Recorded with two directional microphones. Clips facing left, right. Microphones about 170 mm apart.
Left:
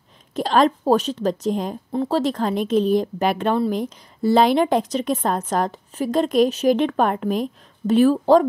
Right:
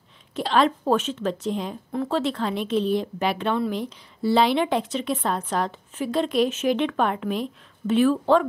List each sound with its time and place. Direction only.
0.3 s speech: 40° left (ahead or behind)
1.9 s a woman's voice: 35° left (ahead or behind)